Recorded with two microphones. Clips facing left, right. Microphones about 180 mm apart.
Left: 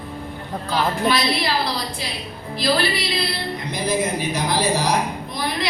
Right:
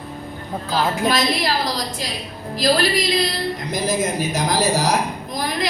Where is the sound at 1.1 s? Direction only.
45° right (ahead or behind).